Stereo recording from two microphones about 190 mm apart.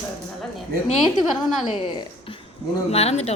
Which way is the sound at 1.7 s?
25° left (ahead or behind).